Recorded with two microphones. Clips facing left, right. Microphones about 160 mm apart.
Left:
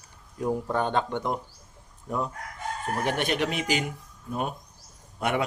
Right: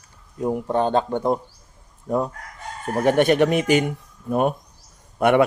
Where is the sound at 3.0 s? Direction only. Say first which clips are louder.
Right 11 dB; 50° right (ahead or behind).